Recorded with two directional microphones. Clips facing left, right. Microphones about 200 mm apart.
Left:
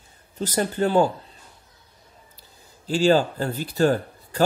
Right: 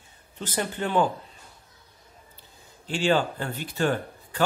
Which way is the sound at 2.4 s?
40° left (ahead or behind).